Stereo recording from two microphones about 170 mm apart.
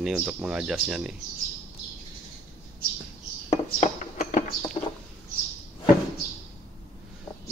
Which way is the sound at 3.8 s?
50° left (ahead or behind).